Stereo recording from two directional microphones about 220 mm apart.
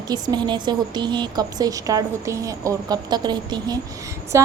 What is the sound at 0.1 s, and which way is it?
A woman's voice, 20° right (ahead or behind).